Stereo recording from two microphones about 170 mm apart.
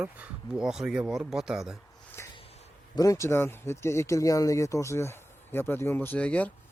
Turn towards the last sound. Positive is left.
turn(degrees=5)  # may be behind; listen again after turning